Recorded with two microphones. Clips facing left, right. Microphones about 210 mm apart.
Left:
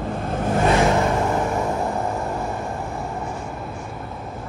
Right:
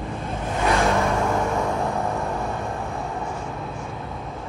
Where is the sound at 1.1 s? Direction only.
Centre (ahead or behind).